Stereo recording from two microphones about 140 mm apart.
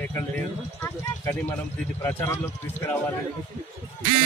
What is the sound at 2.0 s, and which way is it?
A man's voice, 15° left (ahead or behind).